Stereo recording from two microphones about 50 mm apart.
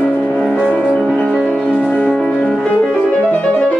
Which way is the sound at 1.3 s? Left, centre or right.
Left.